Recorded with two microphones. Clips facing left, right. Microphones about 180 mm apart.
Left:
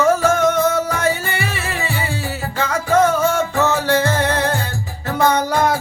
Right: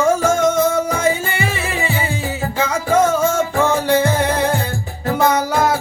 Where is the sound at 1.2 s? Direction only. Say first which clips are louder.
Right 2 dB; 15° right (ahead or behind).